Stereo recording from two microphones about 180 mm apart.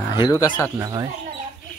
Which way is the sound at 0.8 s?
20° right (ahead or behind).